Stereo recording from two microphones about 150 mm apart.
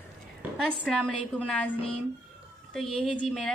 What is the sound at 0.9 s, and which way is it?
Speech, centre (ahead or behind).